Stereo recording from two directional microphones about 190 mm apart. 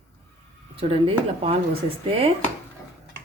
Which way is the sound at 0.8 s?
30° right (ahead or behind).